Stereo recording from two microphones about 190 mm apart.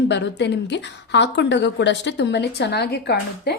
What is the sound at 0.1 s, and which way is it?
A woman's voice, 65° left (ahead or behind).